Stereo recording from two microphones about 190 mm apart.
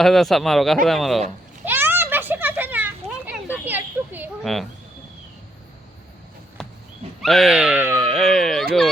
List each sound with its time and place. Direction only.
0.0 s speech: centre (ahead or behind)
1.6 s children playing: 10° right (ahead or behind)
6.6 s dog: 5° left (ahead or behind)
7.2 s speech: centre (ahead or behind)
8.0 s a sound: 5° left (ahead or behind)